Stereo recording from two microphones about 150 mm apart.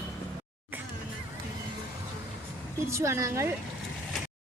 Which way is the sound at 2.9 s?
20° right (ahead or behind).